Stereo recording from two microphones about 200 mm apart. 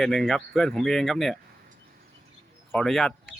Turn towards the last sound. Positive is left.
turn(degrees=0)  # may be behind; listen again after turning